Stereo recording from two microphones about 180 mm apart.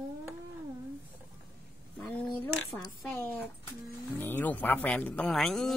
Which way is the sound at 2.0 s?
5° left (ahead or behind).